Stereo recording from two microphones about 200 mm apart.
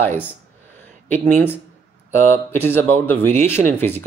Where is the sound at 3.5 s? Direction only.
10° left (ahead or behind).